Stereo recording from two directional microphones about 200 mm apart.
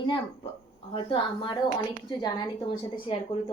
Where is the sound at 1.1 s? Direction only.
25° left (ahead or behind).